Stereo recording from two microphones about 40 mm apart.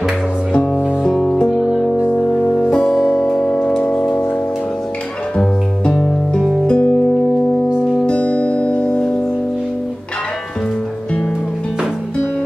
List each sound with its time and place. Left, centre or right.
0.5 s music: left
1.1 s music: centre
2.1 s music: left
2.8 s music: centre
3.3 s music: centre
5.9 s music: centre
6.7 s music: left
8.2 s music: left